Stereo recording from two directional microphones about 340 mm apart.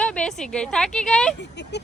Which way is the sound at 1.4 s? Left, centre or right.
Left.